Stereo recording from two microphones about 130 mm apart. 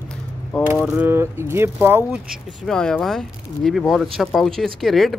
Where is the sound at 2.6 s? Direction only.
5° left (ahead or behind).